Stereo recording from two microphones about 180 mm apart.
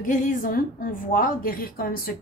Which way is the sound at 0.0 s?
50° left (ahead or behind).